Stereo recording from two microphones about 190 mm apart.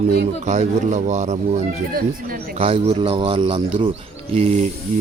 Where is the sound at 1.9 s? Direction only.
50° right (ahead or behind).